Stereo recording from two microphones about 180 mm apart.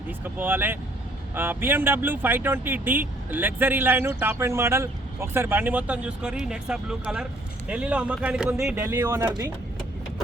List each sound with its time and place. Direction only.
0.3 s speech: 10° right (ahead or behind)